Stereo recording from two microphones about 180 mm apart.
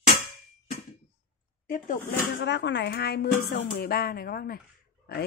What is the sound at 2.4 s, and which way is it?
Speech, 70° left (ahead or behind).